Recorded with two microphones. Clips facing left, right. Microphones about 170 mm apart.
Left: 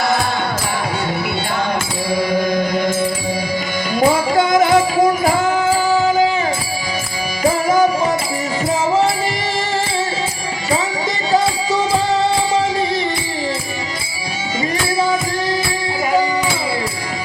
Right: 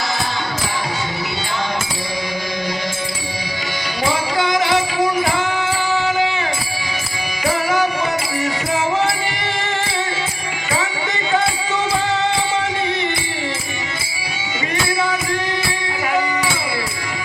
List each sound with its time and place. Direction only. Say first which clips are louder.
4.0 s music: left 5 dB; 45° left (ahead or behind)